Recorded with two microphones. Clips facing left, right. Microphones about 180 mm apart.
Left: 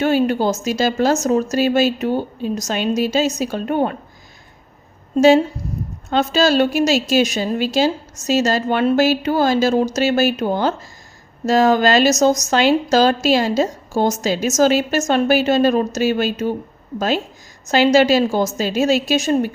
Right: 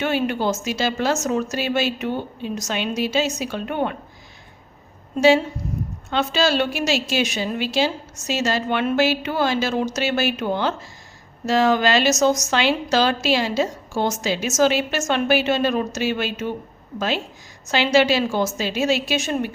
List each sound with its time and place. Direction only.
0.0 s a woman's voice: 40° left (ahead or behind)
6.1 s a woman's voice: 40° left (ahead or behind)
17.7 s a woman's voice: 40° left (ahead or behind)